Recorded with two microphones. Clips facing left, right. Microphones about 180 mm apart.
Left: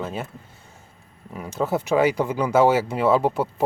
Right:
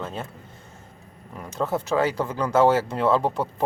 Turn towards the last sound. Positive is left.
turn(degrees=10)  # may be behind; listen again after turning